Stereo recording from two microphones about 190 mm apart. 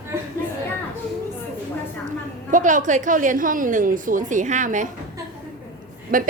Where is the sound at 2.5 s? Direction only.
45° right (ahead or behind).